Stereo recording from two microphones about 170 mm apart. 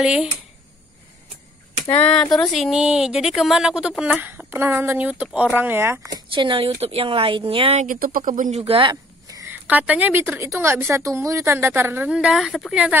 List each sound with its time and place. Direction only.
0.0 s speech: 5° right (ahead or behind)
1.9 s speech: 5° left (ahead or behind); by 7.8 s 35° right (ahead or behind)
7.8 s speech: 55° right (ahead or behind); by 8.9 s 35° right (ahead or behind)
9.3 s speech: 15° right (ahead or behind)